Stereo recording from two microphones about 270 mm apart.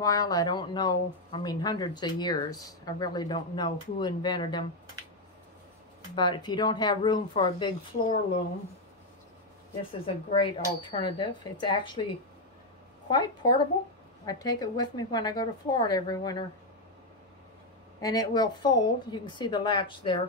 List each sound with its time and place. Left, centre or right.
0.0 s speech: centre
6.1 s speech: centre
10.8 s speech: centre
13.1 s speech: centre
18.0 s speech: centre